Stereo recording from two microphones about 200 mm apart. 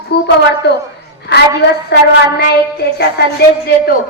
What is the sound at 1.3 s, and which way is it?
A woman's voice, 55° left (ahead or behind).